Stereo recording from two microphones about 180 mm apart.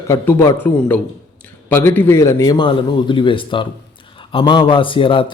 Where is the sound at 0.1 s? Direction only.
15° left (ahead or behind).